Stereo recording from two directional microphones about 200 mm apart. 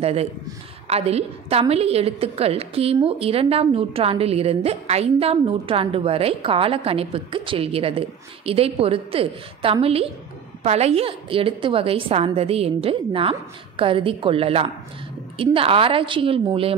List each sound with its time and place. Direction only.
0.0 s a woman's voice: 30° right (ahead or behind)